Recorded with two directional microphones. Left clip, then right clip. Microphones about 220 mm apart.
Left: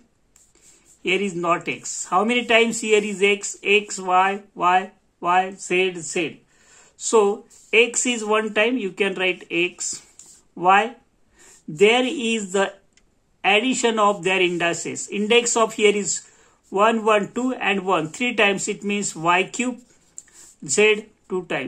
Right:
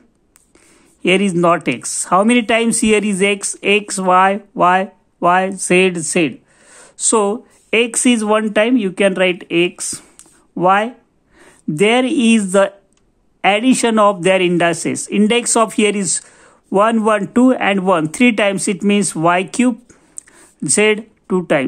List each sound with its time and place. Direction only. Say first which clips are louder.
1.0 s speech: right 8 dB; 50° right (ahead or behind)